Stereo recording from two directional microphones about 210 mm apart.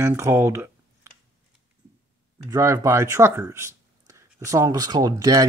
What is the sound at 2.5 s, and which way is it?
Speech, 15° right (ahead or behind).